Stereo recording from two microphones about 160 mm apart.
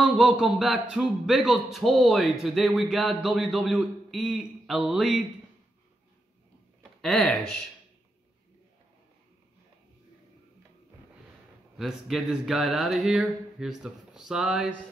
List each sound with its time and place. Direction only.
0.0 s a man's voice: 5° right (ahead or behind)
6.8 s speech: centre (ahead or behind)
11.7 s a man's voice: centre (ahead or behind)